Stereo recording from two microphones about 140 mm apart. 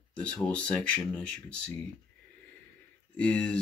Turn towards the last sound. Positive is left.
turn(degrees=10)  # may be behind; listen again after turning